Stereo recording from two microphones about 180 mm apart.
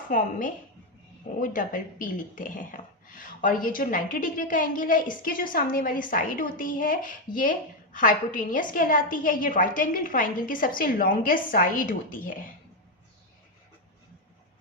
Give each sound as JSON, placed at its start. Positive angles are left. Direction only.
{"t": 0.1, "sound": "speech", "side_deg": 50}